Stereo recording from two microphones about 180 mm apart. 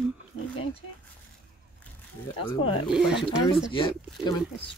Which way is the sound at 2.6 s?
30° left (ahead or behind).